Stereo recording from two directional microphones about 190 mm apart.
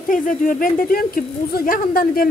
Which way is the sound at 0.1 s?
45° left (ahead or behind).